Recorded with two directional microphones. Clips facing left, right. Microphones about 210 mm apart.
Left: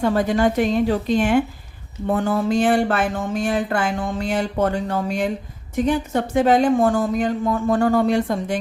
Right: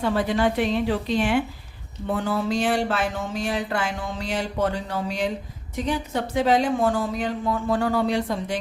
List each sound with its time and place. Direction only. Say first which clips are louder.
0.0 s speech: left 4 dB; 45° left (ahead or behind)